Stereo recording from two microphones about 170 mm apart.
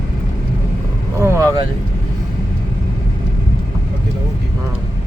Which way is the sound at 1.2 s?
15° right (ahead or behind).